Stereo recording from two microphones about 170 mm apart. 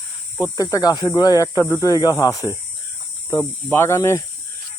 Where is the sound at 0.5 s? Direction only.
20° left (ahead or behind).